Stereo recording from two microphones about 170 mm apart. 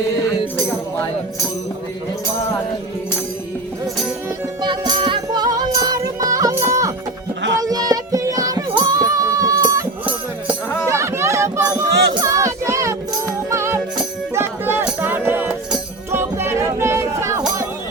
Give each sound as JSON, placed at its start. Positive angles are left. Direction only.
{"t": 4.6, "sound": "music", "side_deg": -25}
{"t": 11.9, "sound": "music", "side_deg": -85}
{"t": 12.2, "sound": "child singing", "side_deg": -20}
{"t": 13.5, "sound": "music", "side_deg": -15}